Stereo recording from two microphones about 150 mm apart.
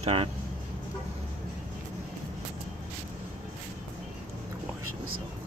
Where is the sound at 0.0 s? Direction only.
40° right (ahead or behind).